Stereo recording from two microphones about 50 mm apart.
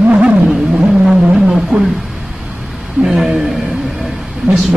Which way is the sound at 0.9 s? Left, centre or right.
Centre.